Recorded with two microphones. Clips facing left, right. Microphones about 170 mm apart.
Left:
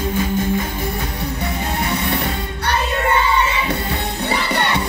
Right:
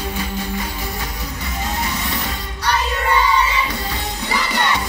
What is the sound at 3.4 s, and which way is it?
Music, 60° left (ahead or behind).